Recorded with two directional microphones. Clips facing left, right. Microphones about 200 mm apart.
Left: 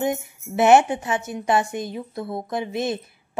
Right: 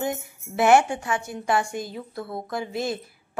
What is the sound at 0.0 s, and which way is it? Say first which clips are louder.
A woman's voice: left 4 dB; 20° left (ahead or behind).